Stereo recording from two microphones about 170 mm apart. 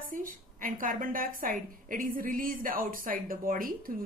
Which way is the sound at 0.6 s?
55° right (ahead or behind).